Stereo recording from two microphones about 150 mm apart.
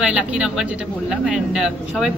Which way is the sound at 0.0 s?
5° right (ahead or behind).